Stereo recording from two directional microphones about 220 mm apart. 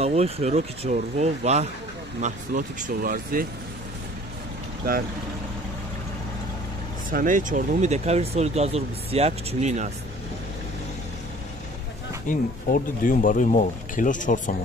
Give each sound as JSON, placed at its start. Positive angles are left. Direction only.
{"t": 0.0, "sound": "speech", "side_deg": -30}
{"t": 7.1, "sound": "speech", "side_deg": -40}
{"t": 12.3, "sound": "speech", "side_deg": 40}